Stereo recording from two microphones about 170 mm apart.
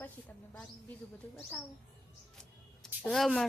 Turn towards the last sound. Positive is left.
turn(degrees=0)  # may be behind; listen again after turning